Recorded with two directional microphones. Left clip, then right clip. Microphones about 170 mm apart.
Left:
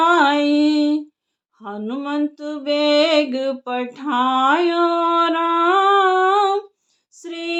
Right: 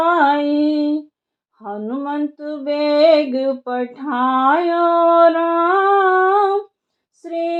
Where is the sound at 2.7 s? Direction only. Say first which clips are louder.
Left 1 dB; 60° left (ahead or behind).